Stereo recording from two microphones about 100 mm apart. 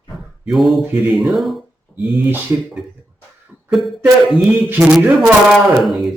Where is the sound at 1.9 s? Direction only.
5° left (ahead or behind).